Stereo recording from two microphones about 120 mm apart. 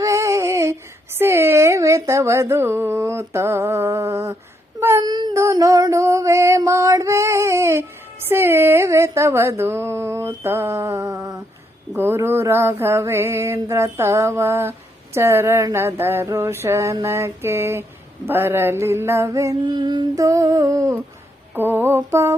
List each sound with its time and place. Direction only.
0.0 s a sound: 25° right (ahead or behind)
1.2 s speech: 20° right (ahead or behind)
4.8 s child singing: 20° right (ahead or behind)
5.0 s child singing: 35° right (ahead or behind)
5.4 s music: 25° right (ahead or behind)
6.7 s female singing: 25° right (ahead or behind)
8.3 s mantra: 20° right (ahead or behind)
11.9 s mantra: 20° right (ahead or behind)